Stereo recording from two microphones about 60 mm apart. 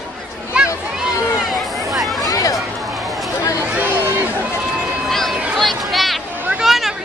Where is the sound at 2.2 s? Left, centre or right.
Left.